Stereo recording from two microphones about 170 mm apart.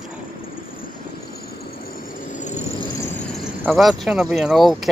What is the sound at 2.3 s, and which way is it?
Vehicle, 45° left (ahead or behind).